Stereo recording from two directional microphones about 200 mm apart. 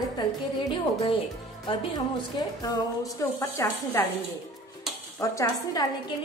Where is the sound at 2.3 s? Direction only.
20° left (ahead or behind).